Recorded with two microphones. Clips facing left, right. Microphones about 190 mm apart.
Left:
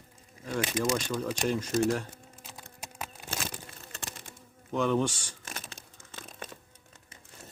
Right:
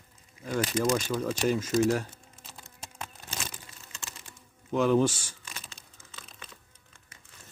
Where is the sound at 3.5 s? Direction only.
55° left (ahead or behind).